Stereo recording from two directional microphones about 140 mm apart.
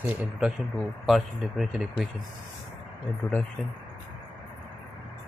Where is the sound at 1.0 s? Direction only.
Centre (ahead or behind).